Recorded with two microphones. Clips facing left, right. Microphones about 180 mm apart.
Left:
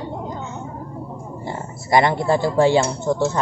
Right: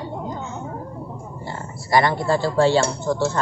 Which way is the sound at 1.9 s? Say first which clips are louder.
Left 2 dB; 20° left (ahead or behind).